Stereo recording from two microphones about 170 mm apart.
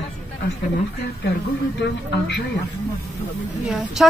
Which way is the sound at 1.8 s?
80° left.